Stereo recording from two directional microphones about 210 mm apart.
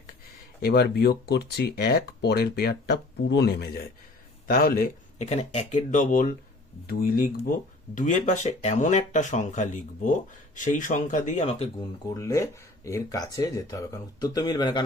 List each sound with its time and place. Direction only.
0.6 s speech: 50° left (ahead or behind)
7.9 s speech: 35° left (ahead or behind)
12.1 s speech: 15° left (ahead or behind)